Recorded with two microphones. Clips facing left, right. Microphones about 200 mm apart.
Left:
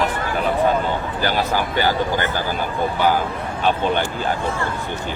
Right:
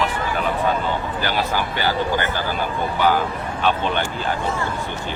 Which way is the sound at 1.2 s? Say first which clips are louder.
Left 4 dB; 45° left (ahead or behind).